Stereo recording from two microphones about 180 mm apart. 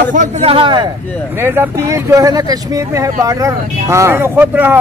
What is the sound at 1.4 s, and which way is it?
Speech, 15° right (ahead or behind).